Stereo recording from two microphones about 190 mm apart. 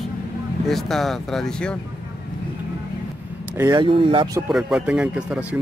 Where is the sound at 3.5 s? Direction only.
20° right (ahead or behind).